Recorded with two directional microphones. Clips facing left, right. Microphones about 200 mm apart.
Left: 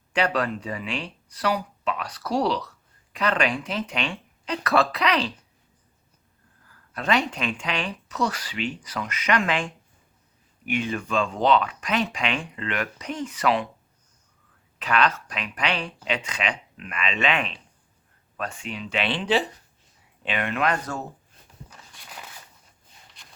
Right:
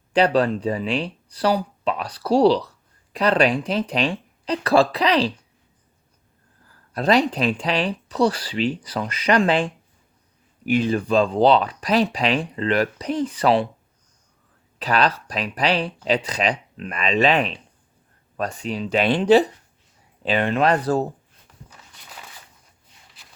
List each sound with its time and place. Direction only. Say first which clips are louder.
0.1 s speech: right 7 dB; 35° right (ahead or behind)
6.9 s speech: right 6 dB; 35° right (ahead or behind)
14.8 s speech: right 3 dB; 35° right (ahead or behind)
23.2 s a sound: right 1 dB; 5° right (ahead or behind)